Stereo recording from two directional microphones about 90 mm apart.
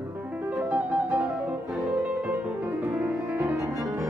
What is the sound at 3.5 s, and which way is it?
Music, 35° right (ahead or behind).